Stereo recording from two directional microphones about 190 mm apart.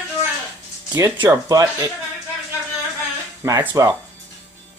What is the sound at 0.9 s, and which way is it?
Speech, 20° right (ahead or behind).